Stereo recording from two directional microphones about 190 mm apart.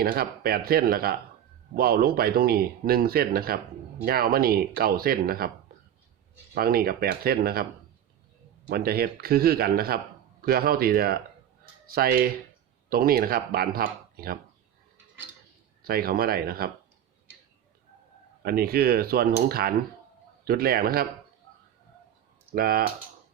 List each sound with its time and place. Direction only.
0.0 s speech: 50° right (ahead or behind)
6.5 s speech: 55° right (ahead or behind)
8.7 s speech: 55° right (ahead or behind)
15.8 s speech: 50° right (ahead or behind)
18.4 s speech: 55° right (ahead or behind)
22.5 s speech: 50° right (ahead or behind)